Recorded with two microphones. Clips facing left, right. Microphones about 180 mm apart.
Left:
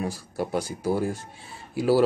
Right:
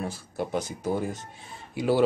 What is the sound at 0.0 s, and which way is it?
Speech, 10° left (ahead or behind).